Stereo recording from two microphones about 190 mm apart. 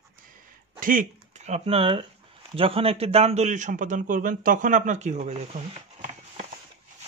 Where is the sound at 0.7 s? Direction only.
45° right (ahead or behind).